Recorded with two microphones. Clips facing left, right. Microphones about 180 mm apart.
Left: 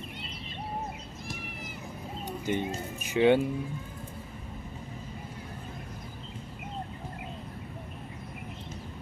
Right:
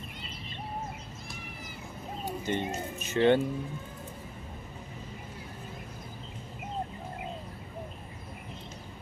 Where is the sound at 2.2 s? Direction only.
10° left (ahead or behind).